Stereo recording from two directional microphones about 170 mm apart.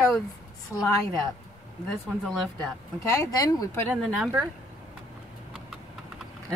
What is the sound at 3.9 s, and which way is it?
Speech, 5° right (ahead or behind).